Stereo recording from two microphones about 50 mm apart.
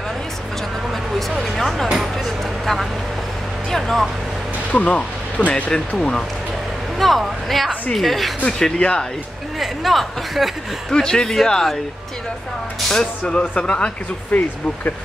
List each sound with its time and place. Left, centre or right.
1.3 s music: centre
2.0 s a sound: centre
3.7 s vehicle: centre
4.7 s speech: left
5.5 s speech: centre
7.0 s speech: centre
8.5 s speech: centre
9.6 s speech: centre
10.9 s speech: centre
12.8 s speech: centre